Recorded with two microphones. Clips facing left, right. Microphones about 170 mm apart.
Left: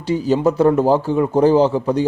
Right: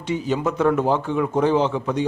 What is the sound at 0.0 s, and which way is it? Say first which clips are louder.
Speech: left 6 dB; 35° left (ahead or behind).